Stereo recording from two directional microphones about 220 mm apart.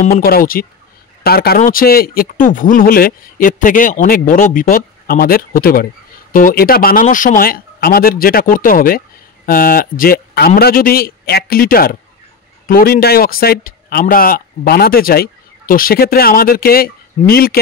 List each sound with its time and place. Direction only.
0.0 s a man's voice: 45° left (ahead or behind)